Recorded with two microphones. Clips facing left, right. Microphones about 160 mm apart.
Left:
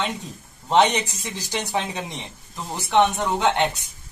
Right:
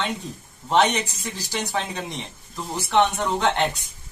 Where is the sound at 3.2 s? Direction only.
5° left (ahead or behind).